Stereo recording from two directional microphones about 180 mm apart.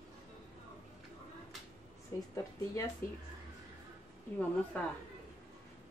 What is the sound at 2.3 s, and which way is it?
Speech, 15° left (ahead or behind).